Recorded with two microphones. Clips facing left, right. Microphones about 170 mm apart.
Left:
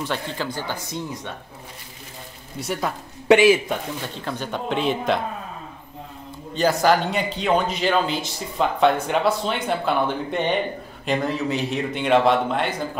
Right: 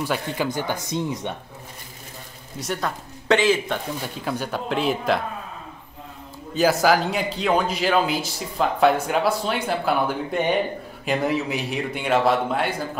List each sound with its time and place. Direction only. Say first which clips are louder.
0.0 s a man's voice: right 2 dB; 10° right (ahead or behind)
2.6 s speech: left 1 dB; 5° left (ahead or behind)
3.7 s speech: even; 5° right (ahead or behind)
6.5 s a man's voice: even; 5° right (ahead or behind)